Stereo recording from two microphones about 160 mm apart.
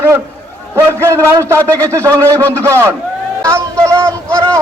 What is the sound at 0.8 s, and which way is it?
A man's voice, 15° right (ahead or behind).